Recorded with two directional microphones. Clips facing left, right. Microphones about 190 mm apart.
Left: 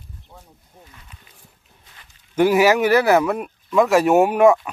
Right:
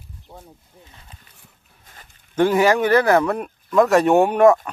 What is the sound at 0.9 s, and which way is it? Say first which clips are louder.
Speech: even; 35° right (ahead or behind).